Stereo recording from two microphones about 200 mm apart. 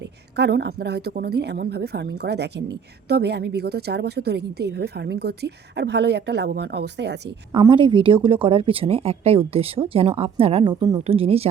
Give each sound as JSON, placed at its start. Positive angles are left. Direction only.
{"t": 0.3, "sound": "a woman's voice", "side_deg": -60}
{"t": 7.5, "sound": "a woman's voice", "side_deg": -25}